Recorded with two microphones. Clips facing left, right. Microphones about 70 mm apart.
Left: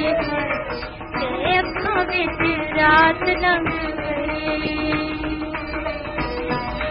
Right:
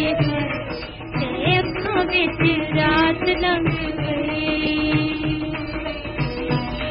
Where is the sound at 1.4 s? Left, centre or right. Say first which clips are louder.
Left 1 dB; left.